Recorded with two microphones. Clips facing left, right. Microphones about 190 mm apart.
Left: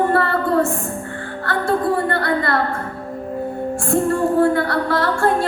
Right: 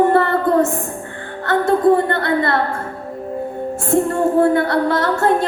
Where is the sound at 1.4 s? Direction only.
20° right (ahead or behind).